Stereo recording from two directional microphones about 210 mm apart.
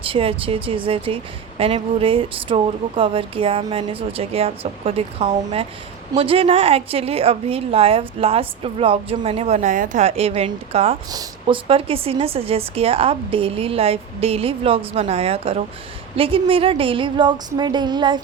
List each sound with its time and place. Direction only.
0.0 s speech: 25° right (ahead or behind)